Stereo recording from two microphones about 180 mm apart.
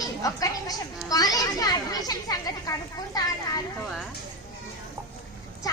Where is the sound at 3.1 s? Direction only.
20° left (ahead or behind).